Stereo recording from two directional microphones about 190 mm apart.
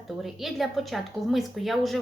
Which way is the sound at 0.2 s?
Centre (ahead or behind).